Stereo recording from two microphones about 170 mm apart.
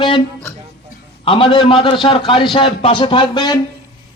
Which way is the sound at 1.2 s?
30° left (ahead or behind).